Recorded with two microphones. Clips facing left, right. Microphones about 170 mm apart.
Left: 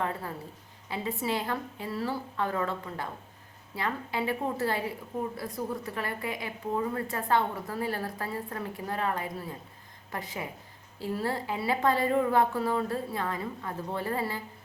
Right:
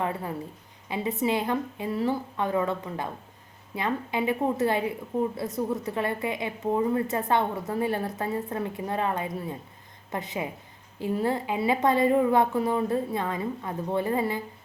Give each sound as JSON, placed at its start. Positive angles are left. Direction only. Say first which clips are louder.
{"t": 0.0, "sound": "a woman's voice", "louder": "right 3 dB", "side_deg": -20}